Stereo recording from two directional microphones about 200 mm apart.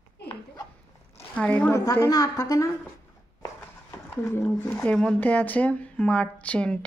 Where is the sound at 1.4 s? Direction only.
10° left (ahead or behind).